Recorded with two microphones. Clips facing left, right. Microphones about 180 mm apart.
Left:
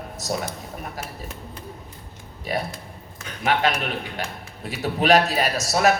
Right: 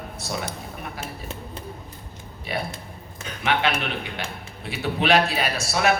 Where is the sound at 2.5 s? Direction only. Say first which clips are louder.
Left 2 dB; 40° left (ahead or behind).